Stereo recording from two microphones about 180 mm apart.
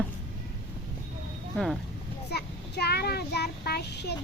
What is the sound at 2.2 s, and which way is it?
Child singing, 65° left (ahead or behind).